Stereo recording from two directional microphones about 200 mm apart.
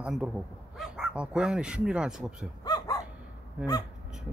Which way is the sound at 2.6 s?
20° left (ahead or behind).